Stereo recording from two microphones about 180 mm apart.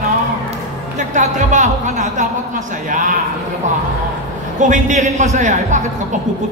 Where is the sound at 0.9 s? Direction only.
45° right (ahead or behind).